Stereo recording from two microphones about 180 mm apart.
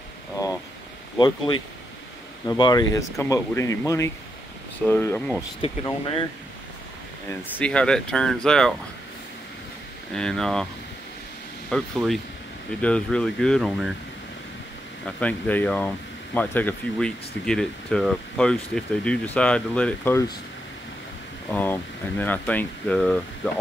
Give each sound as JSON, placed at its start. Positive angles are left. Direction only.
{"t": 1.1, "sound": "speech", "side_deg": 25}
{"t": 5.6, "sound": "speech", "side_deg": 30}
{"t": 7.2, "sound": "speech", "side_deg": 10}
{"t": 10.1, "sound": "speech", "side_deg": 5}
{"t": 11.7, "sound": "speech", "side_deg": 5}
{"t": 15.0, "sound": "speech", "side_deg": 10}
{"t": 21.5, "sound": "speech", "side_deg": 10}